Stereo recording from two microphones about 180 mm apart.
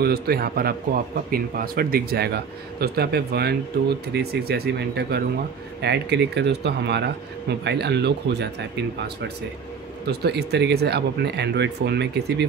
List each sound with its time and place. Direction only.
0.0 s speech: 60° right (ahead or behind)